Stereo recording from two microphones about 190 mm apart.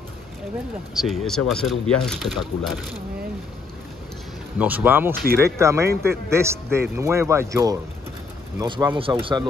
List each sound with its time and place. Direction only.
0.9 s speech: centre (ahead or behind)
4.6 s speech: 10° right (ahead or behind)
5.1 s speech: 55° right (ahead or behind)
5.4 s speech: 15° right (ahead or behind)